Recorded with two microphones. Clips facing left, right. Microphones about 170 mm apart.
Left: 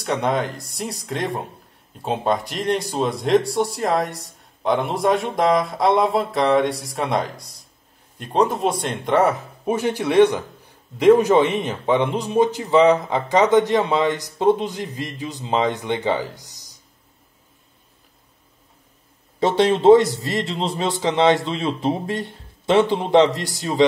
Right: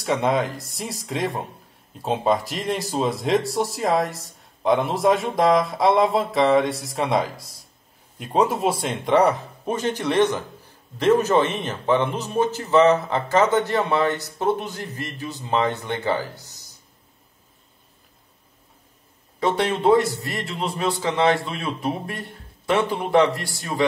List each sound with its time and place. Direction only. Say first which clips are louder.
0.0 s a man's voice: even; centre (ahead or behind); by 16.7 s 15° left (ahead or behind)
19.4 s a man's voice: left 5 dB; 25° left (ahead or behind)